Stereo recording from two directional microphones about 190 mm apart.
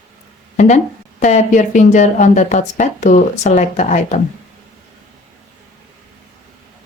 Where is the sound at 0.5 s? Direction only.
40° left (ahead or behind).